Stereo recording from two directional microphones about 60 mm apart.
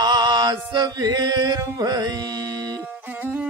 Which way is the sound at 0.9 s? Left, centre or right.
Right.